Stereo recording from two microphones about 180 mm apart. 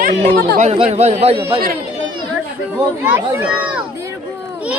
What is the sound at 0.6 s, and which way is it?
Speech, 35° right (ahead or behind).